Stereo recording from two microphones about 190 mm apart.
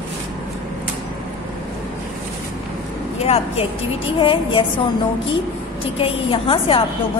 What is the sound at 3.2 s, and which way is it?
A woman's voice, 35° left (ahead or behind).